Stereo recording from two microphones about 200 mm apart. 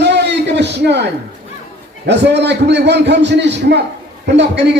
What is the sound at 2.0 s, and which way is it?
A man's voice, 60° right (ahead or behind).